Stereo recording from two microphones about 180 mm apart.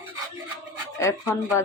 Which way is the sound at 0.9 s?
15° left (ahead or behind).